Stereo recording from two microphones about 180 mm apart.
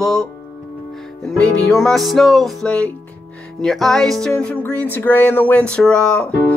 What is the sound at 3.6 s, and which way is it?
Speech, centre (ahead or behind).